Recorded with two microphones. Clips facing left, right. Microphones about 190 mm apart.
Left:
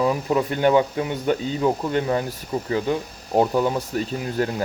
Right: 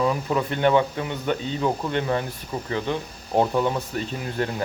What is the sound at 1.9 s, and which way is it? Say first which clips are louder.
Speech: left 2 dB; 35° left (ahead or behind).